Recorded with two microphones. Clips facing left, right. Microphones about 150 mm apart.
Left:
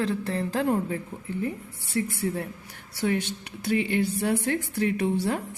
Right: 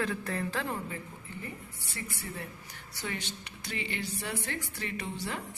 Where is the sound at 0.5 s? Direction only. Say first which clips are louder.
Left 10 dB; 45° left (ahead or behind).